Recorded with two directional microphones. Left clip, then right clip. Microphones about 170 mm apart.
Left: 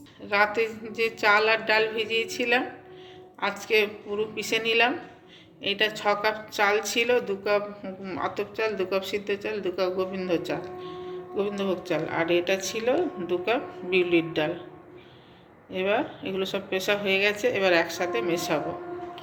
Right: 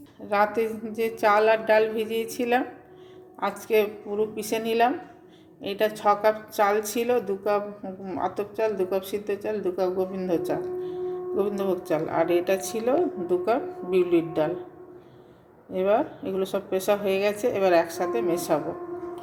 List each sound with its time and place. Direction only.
0.3 s a woman's voice: 45° right (ahead or behind)
15.7 s a woman's voice: 40° right (ahead or behind)